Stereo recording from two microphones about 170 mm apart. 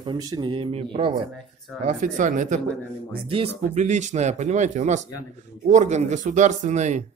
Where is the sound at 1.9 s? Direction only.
50° right (ahead or behind).